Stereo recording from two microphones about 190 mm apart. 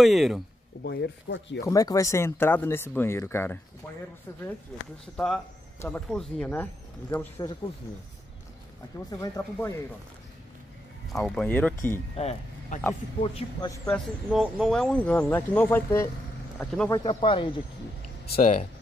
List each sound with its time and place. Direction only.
0.0 s speech: centre (ahead or behind)
0.8 s speech: 65° left (ahead or behind)
1.6 s speech: 20° left (ahead or behind)
5.1 s speech: 5° left (ahead or behind)
9.2 s speech: 15° left (ahead or behind)
11.1 s speech: 5° left (ahead or behind)
12.2 s speech: 35° left (ahead or behind)
13.8 s speech: centre (ahead or behind)
16.9 s speech: 25° left (ahead or behind)
18.4 s speech: 40° left (ahead or behind)